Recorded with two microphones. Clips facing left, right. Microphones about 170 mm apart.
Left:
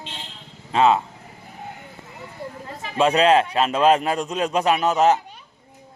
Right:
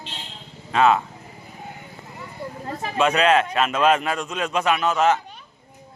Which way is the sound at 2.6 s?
40° right (ahead or behind).